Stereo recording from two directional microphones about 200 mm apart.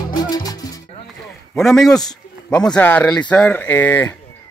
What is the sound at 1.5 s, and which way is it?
A man's voice, centre (ahead or behind).